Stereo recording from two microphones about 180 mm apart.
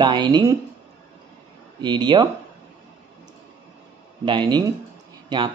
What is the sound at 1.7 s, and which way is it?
Speech, 25° right (ahead or behind).